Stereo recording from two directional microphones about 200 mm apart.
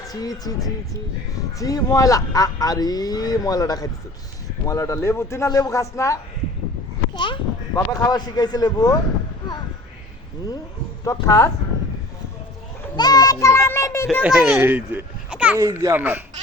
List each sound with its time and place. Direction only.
0.1 s speech: 20° left (ahead or behind)
7.1 s a sound: 25° left (ahead or behind)
7.9 s speech: 15° left (ahead or behind)
11.0 s speech: 15° left (ahead or behind)
13.0 s speech: 20° left (ahead or behind)
14.2 s a child's voice: 5° right (ahead or behind)